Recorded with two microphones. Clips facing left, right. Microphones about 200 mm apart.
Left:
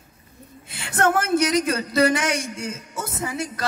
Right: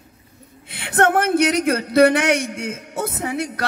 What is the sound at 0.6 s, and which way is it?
Speech, 60° right (ahead or behind).